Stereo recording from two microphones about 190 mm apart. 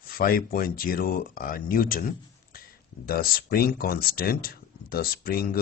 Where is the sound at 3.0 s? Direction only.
50° left (ahead or behind).